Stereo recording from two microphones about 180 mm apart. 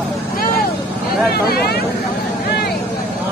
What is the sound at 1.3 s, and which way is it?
Vehicle, 60° left (ahead or behind).